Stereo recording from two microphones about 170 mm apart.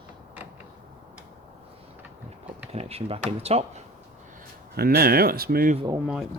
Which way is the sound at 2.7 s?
35° right (ahead or behind).